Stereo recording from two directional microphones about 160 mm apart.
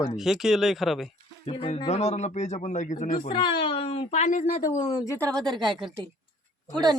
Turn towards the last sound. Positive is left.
turn(degrees=-25)  # may be behind; listen again after turning